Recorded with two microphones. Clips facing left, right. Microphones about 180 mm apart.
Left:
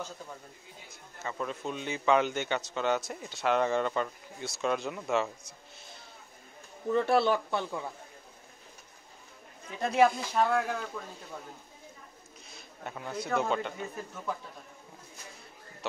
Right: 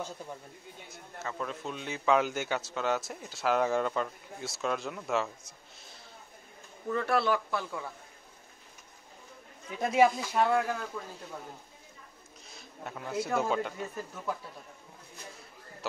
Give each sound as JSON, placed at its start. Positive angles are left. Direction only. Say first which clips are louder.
{"t": 1.2, "sound": "a man's voice", "louder": "left 2 dB", "side_deg": 0}
{"t": 6.9, "sound": "speech", "louder": "left 3 dB", "side_deg": 25}
{"t": 9.8, "sound": "a man's voice", "louder": "even", "side_deg": -5}
{"t": 12.4, "sound": "speech", "louder": "even", "side_deg": 0}